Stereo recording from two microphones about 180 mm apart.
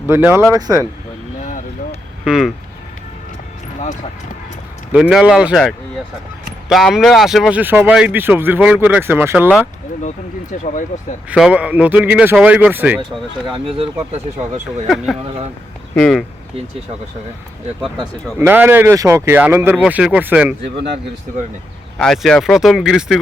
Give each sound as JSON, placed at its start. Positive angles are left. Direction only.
{"t": 0.1, "sound": "speech", "side_deg": -10}
{"t": 1.4, "sound": "vehicle", "side_deg": 40}
{"t": 2.2, "sound": "speech", "side_deg": -5}
{"t": 4.9, "sound": "speech", "side_deg": -5}
{"t": 10.5, "sound": "speech", "side_deg": 45}
{"t": 11.3, "sound": "speech", "side_deg": -5}
{"t": 13.5, "sound": "speech", "side_deg": -30}
{"t": 14.8, "sound": "speech", "side_deg": 0}
{"t": 17.7, "sound": "speech", "side_deg": 0}
{"t": 18.3, "sound": "speech", "side_deg": -10}
{"t": 21.9, "sound": "speech", "side_deg": 5}